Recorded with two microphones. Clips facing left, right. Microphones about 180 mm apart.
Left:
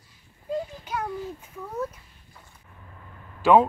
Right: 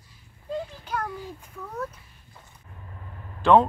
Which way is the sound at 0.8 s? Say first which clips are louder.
Even; 10° left (ahead or behind).